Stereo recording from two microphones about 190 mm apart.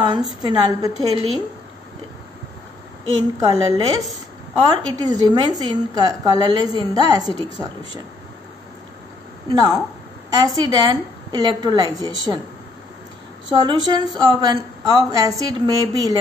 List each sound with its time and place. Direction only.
0.1 s a woman's voice: 25° right (ahead or behind)
3.3 s a woman's voice: 20° right (ahead or behind)
9.5 s a woman's voice: 20° right (ahead or behind)
13.8 s a woman's voice: 20° right (ahead or behind)